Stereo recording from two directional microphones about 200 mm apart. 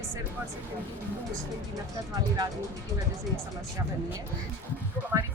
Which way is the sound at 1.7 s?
15° right (ahead or behind).